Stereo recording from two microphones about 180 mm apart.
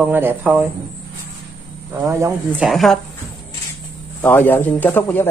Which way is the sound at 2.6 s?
Centre (ahead or behind).